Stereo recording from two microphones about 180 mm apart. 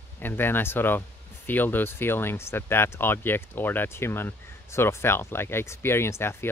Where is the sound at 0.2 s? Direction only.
10° left (ahead or behind).